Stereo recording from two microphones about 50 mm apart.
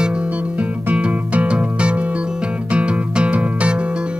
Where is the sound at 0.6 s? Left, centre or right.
Right.